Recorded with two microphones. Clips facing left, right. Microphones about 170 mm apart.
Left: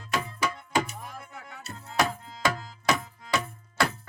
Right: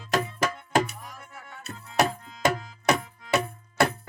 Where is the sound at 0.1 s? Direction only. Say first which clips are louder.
Right 4 dB; 45° right (ahead or behind).